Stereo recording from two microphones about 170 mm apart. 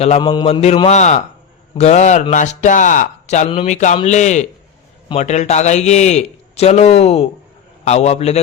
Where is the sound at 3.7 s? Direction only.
45° left (ahead or behind).